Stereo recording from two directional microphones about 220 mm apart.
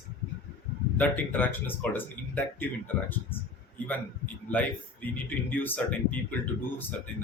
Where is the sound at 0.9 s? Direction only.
10° left (ahead or behind).